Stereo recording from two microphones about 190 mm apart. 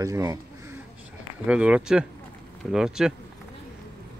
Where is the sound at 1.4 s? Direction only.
5° right (ahead or behind).